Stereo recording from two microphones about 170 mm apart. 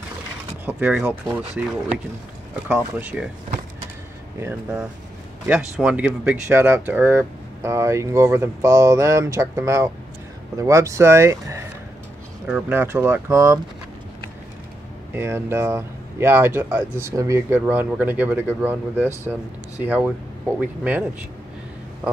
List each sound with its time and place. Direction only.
0.7 s speech: 10° right (ahead or behind)
4.4 s speech: 10° right (ahead or behind)
15.1 s speech: 15° right (ahead or behind)